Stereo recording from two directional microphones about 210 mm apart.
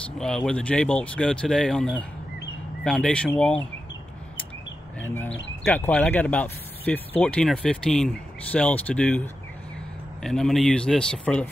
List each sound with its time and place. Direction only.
0.2 s speech: 5° left (ahead or behind)
5.0 s speech: 10° left (ahead or behind)
5.3 s speech: 60° left (ahead or behind)
5.7 s speech: 5° left (ahead or behind)